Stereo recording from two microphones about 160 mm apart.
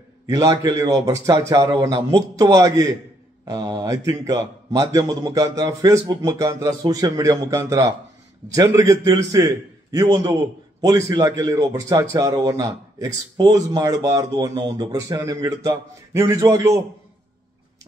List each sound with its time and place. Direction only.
0.3 s a man's voice: 20° right (ahead or behind)